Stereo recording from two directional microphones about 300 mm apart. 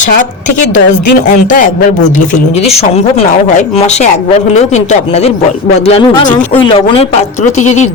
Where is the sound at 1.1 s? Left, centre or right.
Left.